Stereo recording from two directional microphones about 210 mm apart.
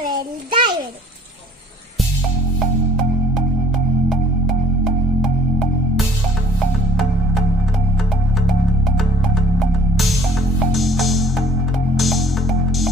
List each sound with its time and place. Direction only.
0.0 s a sound: 20° right (ahead or behind)
4.1 s music: centre (ahead or behind)
8.4 s music: centre (ahead or behind)